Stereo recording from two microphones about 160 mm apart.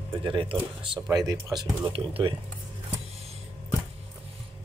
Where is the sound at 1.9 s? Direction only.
35° right (ahead or behind).